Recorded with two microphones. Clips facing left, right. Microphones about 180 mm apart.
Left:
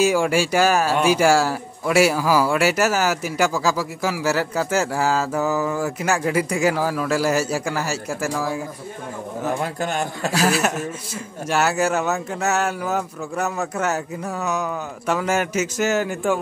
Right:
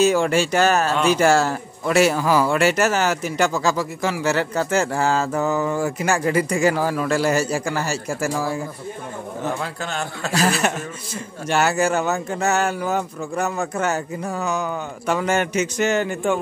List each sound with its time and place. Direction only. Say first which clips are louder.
0.0 s a man's voice: right 1 dB; 10° left (ahead or behind)
10.3 s speech: even; 5° left (ahead or behind)